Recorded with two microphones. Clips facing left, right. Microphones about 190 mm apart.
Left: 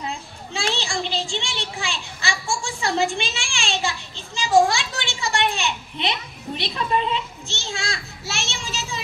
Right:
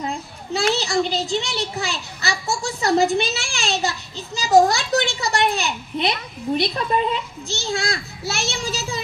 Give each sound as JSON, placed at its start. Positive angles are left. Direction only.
{"t": 0.0, "sound": "children playing", "side_deg": -40}
{"t": 0.7, "sound": "a child's voice", "side_deg": -40}